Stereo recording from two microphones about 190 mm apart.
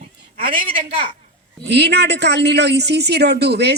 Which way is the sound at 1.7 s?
60° right (ahead or behind).